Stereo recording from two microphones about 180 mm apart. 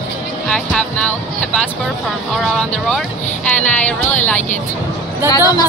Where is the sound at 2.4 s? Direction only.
5° left (ahead or behind).